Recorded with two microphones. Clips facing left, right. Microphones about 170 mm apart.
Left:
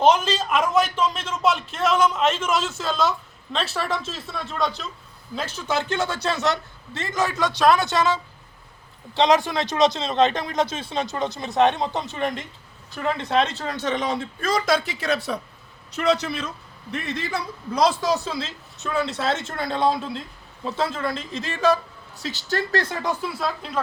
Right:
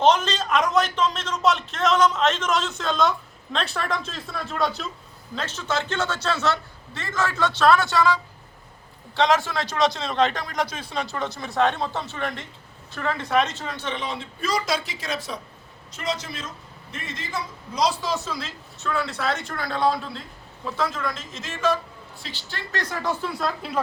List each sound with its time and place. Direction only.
0.0 s a man's voice: 10° left (ahead or behind)
5.3 s a man's voice: 10° left (ahead or behind); by 18.1 s 55° left (ahead or behind)
18.1 s a man's voice: 30° left (ahead or behind)
23.2 s a man's voice: 10° left (ahead or behind)
23.6 s a woman's voice: 5° right (ahead or behind)